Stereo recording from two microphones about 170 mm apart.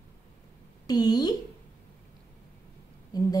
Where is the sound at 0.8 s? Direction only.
25° left (ahead or behind).